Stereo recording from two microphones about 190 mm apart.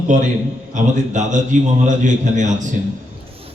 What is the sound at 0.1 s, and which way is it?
A man's voice, 40° right (ahead or behind).